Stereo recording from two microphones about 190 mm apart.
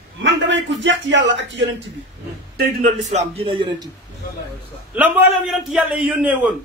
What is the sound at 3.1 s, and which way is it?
Speech, 35° right (ahead or behind).